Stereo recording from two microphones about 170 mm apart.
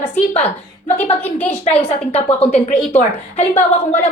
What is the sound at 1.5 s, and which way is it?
A woman's voice, 40° left (ahead or behind).